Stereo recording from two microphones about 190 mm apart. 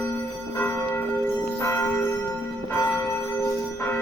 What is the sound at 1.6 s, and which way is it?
Church bell, 10° left (ahead or behind).